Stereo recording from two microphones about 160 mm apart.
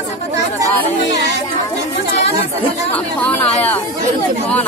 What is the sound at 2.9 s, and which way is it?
Speech, 10° left (ahead or behind).